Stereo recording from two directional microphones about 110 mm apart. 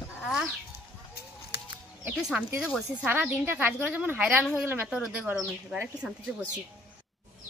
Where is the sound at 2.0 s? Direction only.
10° right (ahead or behind).